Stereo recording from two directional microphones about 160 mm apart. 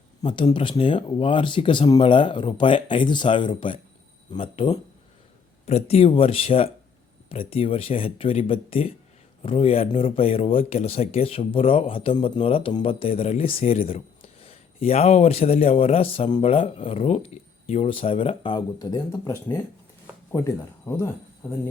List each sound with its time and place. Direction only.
0.3 s speech: 30° left (ahead or behind)